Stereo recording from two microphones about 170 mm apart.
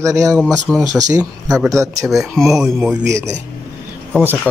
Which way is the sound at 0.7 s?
Centre (ahead or behind).